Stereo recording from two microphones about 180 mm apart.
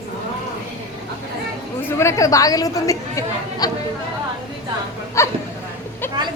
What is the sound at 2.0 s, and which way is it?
A woman's voice, 15° left (ahead or behind).